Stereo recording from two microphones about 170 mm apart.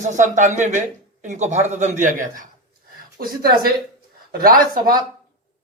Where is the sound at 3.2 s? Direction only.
65° right (ahead or behind).